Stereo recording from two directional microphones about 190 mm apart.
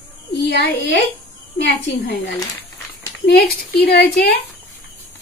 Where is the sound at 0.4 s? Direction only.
60° left (ahead or behind).